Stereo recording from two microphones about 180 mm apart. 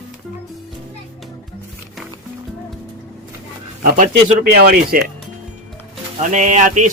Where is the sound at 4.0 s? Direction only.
55° right (ahead or behind).